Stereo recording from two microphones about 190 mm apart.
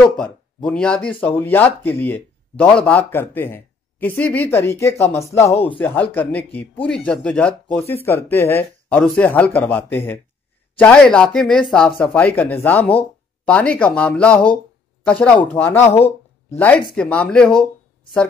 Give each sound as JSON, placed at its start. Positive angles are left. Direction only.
{"t": 0.0, "sound": "speech", "side_deg": 5}
{"t": 15.9, "sound": "a sound", "side_deg": 35}
{"t": 16.5, "sound": "speech", "side_deg": 5}